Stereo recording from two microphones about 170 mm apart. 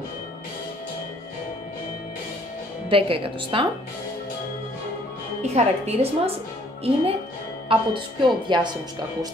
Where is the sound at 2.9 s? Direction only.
30° right (ahead or behind).